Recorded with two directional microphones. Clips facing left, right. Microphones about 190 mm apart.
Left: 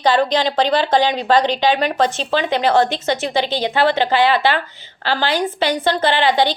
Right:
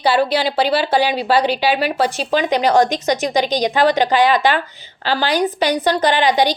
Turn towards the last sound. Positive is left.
turn(degrees=-15)  # may be behind; listen again after turning